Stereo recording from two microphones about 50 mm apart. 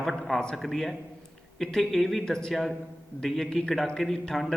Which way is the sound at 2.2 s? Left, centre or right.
Centre.